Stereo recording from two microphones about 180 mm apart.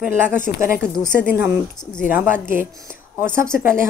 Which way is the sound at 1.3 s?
10° right (ahead or behind).